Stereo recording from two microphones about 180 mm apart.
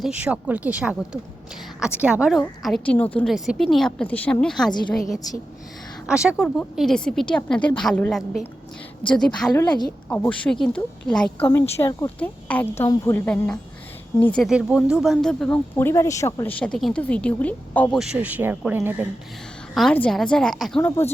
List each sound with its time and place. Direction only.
0.0 s a woman's voice: 5° right (ahead or behind)
9.5 s speech: 20° left (ahead or behind)
10.1 s a woman's voice: 5° left (ahead or behind)
14.5 s speech: 5° right (ahead or behind)
17.9 s speech: 5° right (ahead or behind)
19.7 s a woman's voice: 5° left (ahead or behind)
20.8 s speech: 10° left (ahead or behind)